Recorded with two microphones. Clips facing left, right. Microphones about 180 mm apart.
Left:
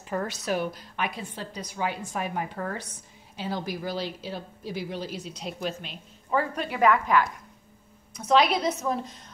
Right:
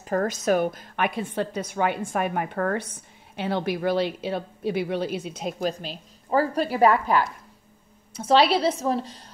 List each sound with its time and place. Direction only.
0.1 s a woman's voice: 45° right (ahead or behind)